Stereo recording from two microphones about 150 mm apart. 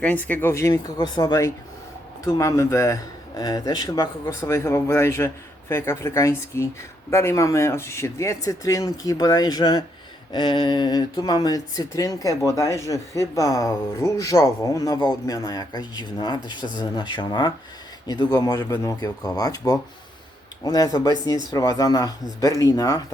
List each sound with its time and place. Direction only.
0.0 s speech: 10° left (ahead or behind)